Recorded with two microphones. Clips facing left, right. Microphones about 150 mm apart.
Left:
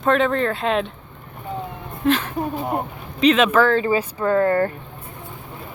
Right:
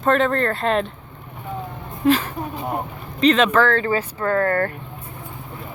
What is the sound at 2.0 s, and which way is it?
Speech, centre (ahead or behind).